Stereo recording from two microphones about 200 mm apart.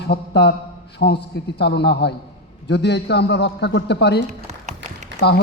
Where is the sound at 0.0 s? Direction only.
55° left (ahead or behind).